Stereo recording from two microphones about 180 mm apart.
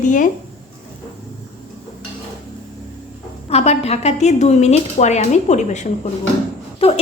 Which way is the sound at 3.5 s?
35° left (ahead or behind).